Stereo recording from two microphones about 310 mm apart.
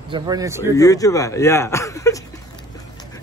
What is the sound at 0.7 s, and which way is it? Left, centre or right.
Speech, centre.